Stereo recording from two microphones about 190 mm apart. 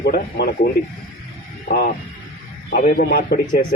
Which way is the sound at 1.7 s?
50° left (ahead or behind).